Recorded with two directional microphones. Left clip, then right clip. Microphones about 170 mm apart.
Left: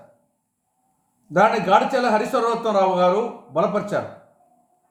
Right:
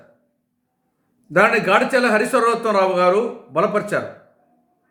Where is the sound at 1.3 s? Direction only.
40° right (ahead or behind).